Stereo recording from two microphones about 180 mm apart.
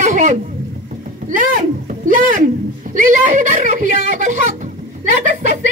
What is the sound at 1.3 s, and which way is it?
A woman's voice, 50° right (ahead or behind).